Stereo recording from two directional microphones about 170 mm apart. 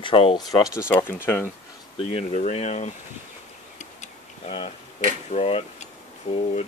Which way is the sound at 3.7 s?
40° left (ahead or behind).